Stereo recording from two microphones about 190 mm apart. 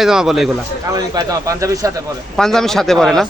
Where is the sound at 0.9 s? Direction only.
20° right (ahead or behind).